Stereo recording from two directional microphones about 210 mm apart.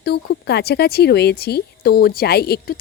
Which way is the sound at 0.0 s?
50° left (ahead or behind).